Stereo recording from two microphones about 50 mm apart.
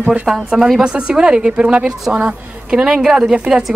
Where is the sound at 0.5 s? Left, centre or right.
Centre.